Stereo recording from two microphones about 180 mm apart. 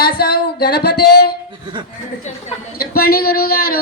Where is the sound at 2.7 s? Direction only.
60° left (ahead or behind).